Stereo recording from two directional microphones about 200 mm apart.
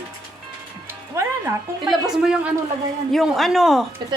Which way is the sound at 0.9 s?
15° right (ahead or behind).